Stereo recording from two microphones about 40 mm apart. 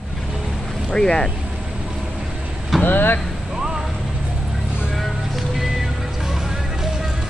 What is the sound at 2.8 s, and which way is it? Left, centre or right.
Speech, left.